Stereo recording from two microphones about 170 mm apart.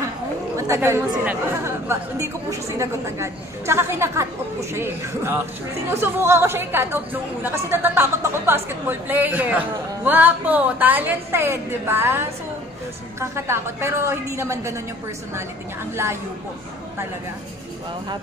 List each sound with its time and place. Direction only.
0.6 s a woman's voice: 15° right (ahead or behind)